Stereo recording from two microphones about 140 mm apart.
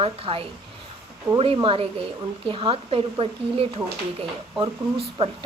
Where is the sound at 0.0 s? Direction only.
40° right (ahead or behind).